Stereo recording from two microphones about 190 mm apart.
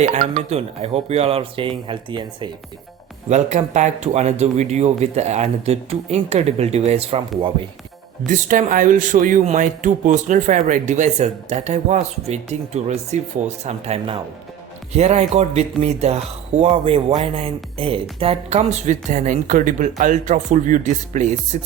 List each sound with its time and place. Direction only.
0.0 s speech: 35° right (ahead or behind)
3.2 s speech: 35° right (ahead or behind)
8.3 s speech: 45° right (ahead or behind)